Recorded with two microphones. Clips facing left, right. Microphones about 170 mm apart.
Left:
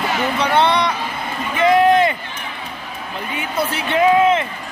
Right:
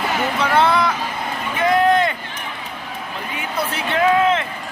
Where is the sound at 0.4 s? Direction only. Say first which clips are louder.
Even; centre (ahead or behind).